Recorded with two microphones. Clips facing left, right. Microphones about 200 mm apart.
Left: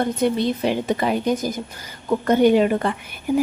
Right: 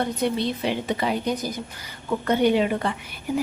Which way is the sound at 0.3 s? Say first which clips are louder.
Left 4 dB; 45° left (ahead or behind).